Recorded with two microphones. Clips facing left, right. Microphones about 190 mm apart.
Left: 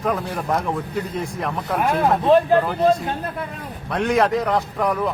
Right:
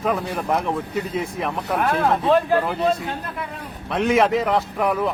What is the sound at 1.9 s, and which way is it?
Speech, 15° left (ahead or behind).